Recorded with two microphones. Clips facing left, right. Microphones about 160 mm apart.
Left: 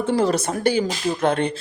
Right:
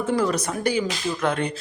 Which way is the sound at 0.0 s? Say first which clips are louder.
Left 3 dB; 30° left (ahead or behind).